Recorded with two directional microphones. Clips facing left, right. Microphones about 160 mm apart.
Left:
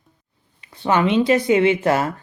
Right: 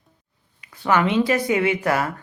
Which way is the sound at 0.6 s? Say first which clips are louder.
Left 1 dB; 25° left (ahead or behind).